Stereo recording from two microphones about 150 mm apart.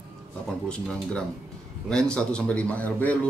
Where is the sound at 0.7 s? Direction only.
5° left (ahead or behind).